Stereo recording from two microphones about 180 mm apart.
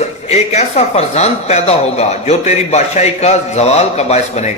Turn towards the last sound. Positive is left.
turn(degrees=35)  # may be behind; listen again after turning